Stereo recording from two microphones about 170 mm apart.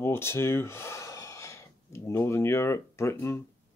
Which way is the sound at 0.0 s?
15° left (ahead or behind).